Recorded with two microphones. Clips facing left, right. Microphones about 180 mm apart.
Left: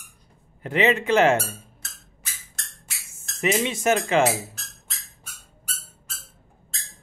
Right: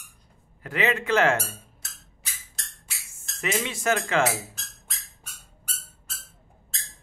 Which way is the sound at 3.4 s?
20° left (ahead or behind).